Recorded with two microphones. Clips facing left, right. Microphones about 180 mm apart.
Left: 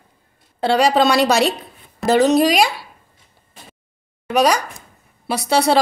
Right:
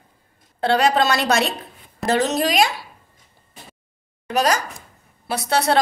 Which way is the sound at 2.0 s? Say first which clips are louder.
Left 4 dB; centre (ahead or behind).